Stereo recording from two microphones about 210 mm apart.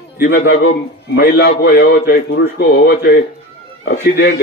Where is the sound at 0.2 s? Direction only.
50° left (ahead or behind).